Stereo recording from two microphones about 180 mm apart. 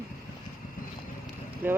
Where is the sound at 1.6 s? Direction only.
10° right (ahead or behind).